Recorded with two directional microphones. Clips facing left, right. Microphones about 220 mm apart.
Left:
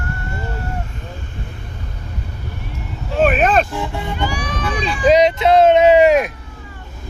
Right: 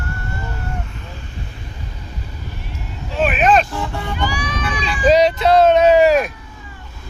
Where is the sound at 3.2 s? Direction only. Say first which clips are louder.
Left 1 dB; 45° left (ahead or behind).